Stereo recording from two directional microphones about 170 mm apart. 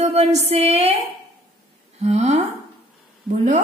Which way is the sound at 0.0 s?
40° right (ahead or behind).